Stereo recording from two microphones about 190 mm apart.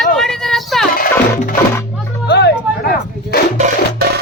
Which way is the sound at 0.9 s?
45° left (ahead or behind).